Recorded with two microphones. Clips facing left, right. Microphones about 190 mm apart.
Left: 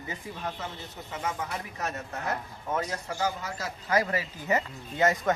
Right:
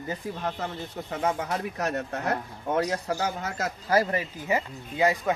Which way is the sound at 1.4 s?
65° right (ahead or behind).